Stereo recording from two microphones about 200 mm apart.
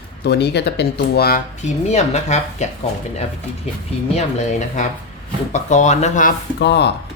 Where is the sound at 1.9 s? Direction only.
35° left (ahead or behind).